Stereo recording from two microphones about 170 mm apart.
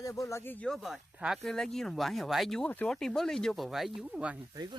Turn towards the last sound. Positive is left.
turn(degrees=-5)  # may be behind; listen again after turning